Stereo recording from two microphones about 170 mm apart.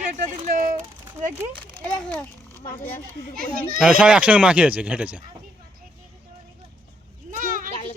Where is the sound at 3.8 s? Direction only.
5° right (ahead or behind).